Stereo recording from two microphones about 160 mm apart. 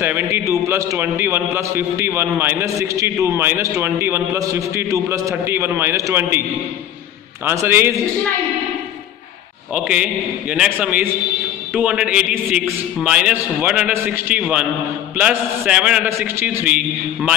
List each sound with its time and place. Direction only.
0.0 s a man's voice: 15° right (ahead or behind)
7.4 s a man's voice: 15° right (ahead or behind)
10.5 s a man's voice: 5° right (ahead or behind)